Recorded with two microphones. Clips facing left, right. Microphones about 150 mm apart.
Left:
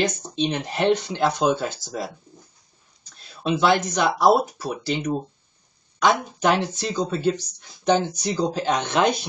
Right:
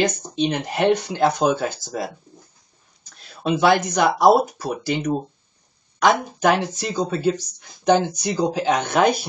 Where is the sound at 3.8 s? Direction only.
10° right (ahead or behind).